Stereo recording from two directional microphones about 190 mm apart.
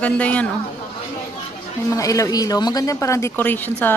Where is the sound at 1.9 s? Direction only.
15° left (ahead or behind).